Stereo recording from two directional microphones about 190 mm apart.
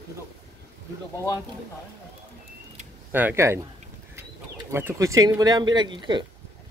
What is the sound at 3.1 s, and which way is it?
Speech, 10° right (ahead or behind).